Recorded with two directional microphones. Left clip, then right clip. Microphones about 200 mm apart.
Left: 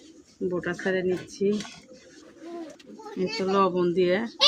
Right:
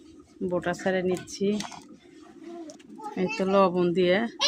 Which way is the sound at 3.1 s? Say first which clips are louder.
Right 1 dB; 35° right (ahead or behind).